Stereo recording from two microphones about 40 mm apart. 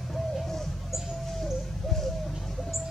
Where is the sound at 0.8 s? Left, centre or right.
Centre.